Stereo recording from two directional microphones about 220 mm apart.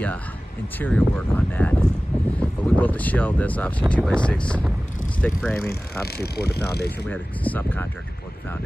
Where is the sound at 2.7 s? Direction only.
5° left (ahead or behind).